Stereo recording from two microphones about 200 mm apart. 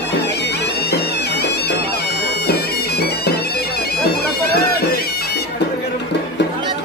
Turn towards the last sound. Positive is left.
turn(degrees=50)  # may be behind; listen again after turning